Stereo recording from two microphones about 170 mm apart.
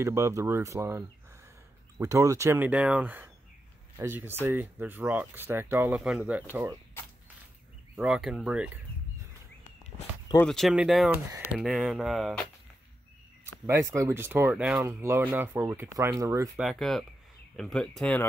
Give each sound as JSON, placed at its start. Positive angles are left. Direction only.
{"t": 0.0, "sound": "speech", "side_deg": -20}
{"t": 7.9, "sound": "speech", "side_deg": -5}
{"t": 10.3, "sound": "speech", "side_deg": 5}
{"t": 13.7, "sound": "speech", "side_deg": -20}
{"t": 16.5, "sound": "speech", "side_deg": 0}